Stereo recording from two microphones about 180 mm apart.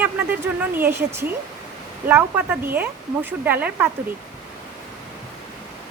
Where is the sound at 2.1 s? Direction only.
10° right (ahead or behind).